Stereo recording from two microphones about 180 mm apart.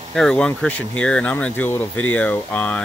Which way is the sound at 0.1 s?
Centre (ahead or behind).